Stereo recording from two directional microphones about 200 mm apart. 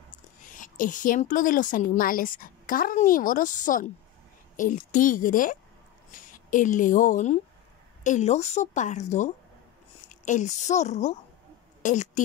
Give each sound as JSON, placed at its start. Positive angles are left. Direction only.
{"t": 0.6, "sound": "a woman's voice", "side_deg": 40}